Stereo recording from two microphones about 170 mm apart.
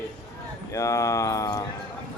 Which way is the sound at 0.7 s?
20° left (ahead or behind).